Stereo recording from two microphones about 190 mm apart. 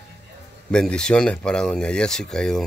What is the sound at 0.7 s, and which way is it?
Speech, 5° left (ahead or behind).